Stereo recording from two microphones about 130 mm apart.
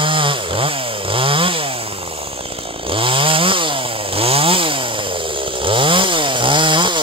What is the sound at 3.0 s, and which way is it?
Chainsaw, 40° right (ahead or behind).